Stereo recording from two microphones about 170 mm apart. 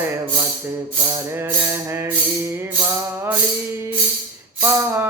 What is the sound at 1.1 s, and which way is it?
Music, 15° right (ahead or behind).